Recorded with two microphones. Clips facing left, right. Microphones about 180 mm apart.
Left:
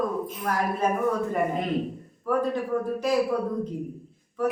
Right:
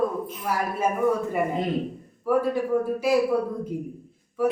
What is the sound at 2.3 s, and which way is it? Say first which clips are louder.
Speech: right 3 dB; 10° right (ahead or behind).